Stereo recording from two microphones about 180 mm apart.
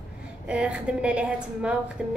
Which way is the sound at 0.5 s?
5° right (ahead or behind).